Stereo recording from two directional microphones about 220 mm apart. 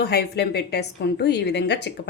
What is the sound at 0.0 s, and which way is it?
Speech, 45° left (ahead or behind).